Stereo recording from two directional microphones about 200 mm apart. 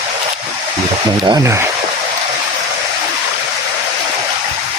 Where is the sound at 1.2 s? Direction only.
20° right (ahead or behind).